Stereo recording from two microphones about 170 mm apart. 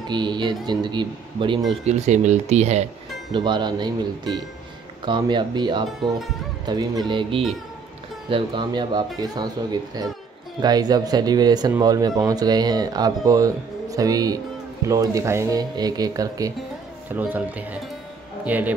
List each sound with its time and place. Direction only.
0.1 s speech: 25° right (ahead or behind)
1.9 s speech: 40° right (ahead or behind)
3.3 s speech: 25° right (ahead or behind)
17.1 s speech: 10° right (ahead or behind)